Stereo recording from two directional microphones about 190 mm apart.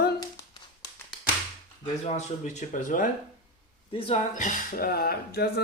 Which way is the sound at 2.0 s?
40° left (ahead or behind).